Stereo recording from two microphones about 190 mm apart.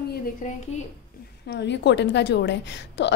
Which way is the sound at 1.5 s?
65° left (ahead or behind).